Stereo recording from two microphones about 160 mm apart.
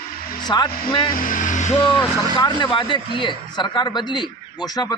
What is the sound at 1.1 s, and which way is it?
Vehicle, 60° left (ahead or behind).